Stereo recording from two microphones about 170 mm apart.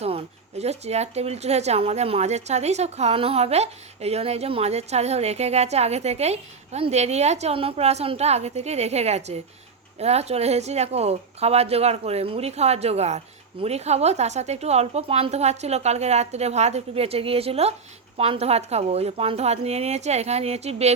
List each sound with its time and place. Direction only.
0.0 s speech: 35° right (ahead or behind)